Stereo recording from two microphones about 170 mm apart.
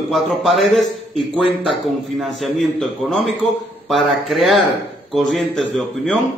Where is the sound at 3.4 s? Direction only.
35° right (ahead or behind).